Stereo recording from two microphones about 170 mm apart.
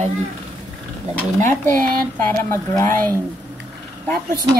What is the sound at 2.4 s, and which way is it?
Speech, 15° left (ahead or behind).